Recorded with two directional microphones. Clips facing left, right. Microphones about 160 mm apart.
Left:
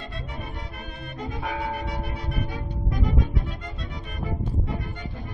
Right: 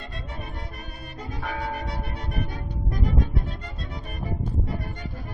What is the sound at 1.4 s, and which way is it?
Music, 15° left (ahead or behind).